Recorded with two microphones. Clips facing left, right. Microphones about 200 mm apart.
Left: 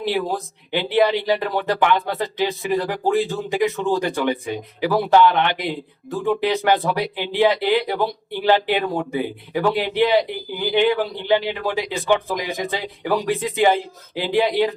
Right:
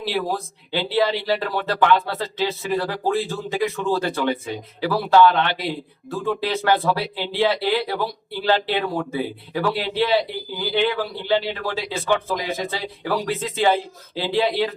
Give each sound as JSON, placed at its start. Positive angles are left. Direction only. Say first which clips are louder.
{"t": 0.0, "sound": "speech", "louder": "left 2 dB", "side_deg": 15}